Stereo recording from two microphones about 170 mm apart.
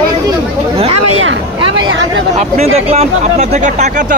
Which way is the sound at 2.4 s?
40° right (ahead or behind).